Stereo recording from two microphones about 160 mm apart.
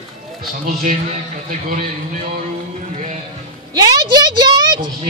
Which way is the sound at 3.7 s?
25° right (ahead or behind).